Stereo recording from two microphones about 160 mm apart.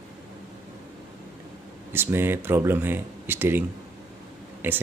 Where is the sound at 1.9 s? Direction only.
15° right (ahead or behind).